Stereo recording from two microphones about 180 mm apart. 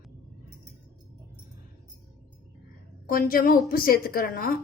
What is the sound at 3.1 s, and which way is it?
A woman's voice, 50° left (ahead or behind).